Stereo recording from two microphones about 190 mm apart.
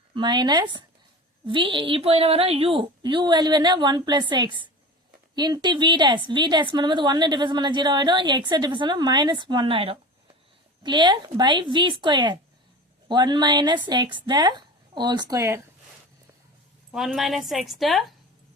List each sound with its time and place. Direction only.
0.1 s a woman's voice: 25° right (ahead or behind)
16.9 s a woman's voice: centre (ahead or behind)